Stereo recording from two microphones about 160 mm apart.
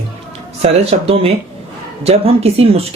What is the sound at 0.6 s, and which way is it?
Speech, 40° right (ahead or behind).